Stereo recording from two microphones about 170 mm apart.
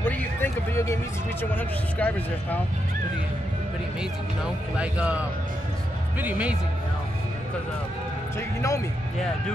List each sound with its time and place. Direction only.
0.0 s a sound: 10° left (ahead or behind)
1.4 s speech: 10° left (ahead or behind)
4.7 s speech: 5° right (ahead or behind)
8.4 s speech: 20° left (ahead or behind)